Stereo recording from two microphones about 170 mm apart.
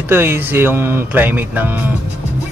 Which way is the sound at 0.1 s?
15° right (ahead or behind).